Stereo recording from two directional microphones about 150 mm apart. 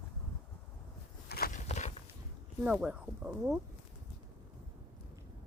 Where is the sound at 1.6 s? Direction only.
50° left (ahead or behind).